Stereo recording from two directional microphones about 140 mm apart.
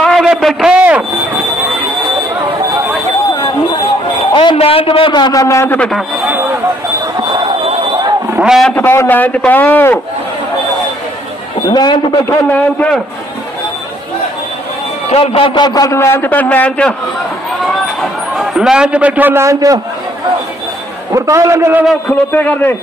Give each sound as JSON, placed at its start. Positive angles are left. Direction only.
{"t": 0.0, "sound": "a man's voice", "side_deg": 0}
{"t": 4.3, "sound": "a man's voice", "side_deg": 35}
{"t": 5.8, "sound": "a man's voice", "side_deg": 0}
{"t": 6.2, "sound": "a sound", "side_deg": -15}
{"t": 7.2, "sound": "a sound", "side_deg": -30}
{"t": 8.3, "sound": "a man's voice", "side_deg": -5}
{"t": 8.6, "sound": "a man's voice", "side_deg": 15}
{"t": 11.7, "sound": "a man's voice", "side_deg": 30}
{"t": 12.3, "sound": "a man's voice", "side_deg": 15}
{"t": 15.0, "sound": "a man's voice", "side_deg": 40}
{"t": 21.1, "sound": "a man's voice", "side_deg": -20}
{"t": 22.3, "sound": "a man's voice", "side_deg": 10}